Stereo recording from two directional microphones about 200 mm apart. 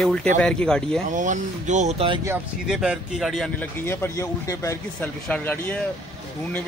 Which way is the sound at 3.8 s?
15° left (ahead or behind).